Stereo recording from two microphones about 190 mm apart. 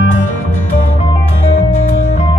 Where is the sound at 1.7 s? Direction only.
40° left (ahead or behind).